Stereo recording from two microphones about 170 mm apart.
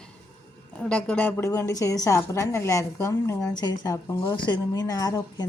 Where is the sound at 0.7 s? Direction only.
5° left (ahead or behind).